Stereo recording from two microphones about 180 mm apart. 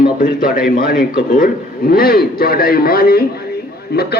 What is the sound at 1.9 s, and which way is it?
Speech, 55° left (ahead or behind).